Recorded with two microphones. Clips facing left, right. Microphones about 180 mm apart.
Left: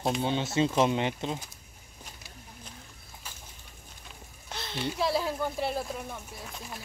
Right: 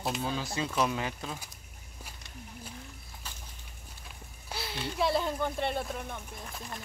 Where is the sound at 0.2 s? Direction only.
25° left (ahead or behind).